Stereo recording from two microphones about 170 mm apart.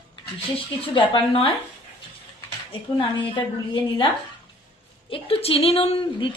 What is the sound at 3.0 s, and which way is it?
A woman's voice, 30° left (ahead or behind).